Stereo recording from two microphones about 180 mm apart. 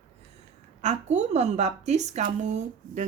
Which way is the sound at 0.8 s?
40° right (ahead or behind).